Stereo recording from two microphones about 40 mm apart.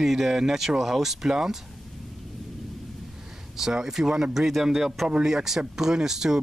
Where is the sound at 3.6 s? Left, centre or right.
Centre.